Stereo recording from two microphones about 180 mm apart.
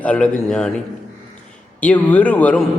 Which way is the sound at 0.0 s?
5° left (ahead or behind).